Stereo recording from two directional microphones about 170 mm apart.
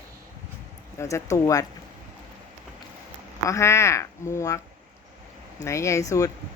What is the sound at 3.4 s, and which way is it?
Speech, 15° left (ahead or behind).